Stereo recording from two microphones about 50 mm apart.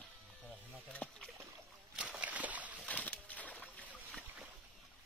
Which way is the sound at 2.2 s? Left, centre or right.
Right.